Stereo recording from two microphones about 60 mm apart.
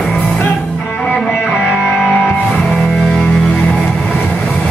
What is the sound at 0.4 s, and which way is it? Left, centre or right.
Music, left.